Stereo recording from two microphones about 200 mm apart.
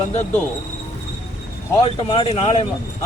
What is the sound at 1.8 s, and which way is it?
Speech, 25° left (ahead or behind).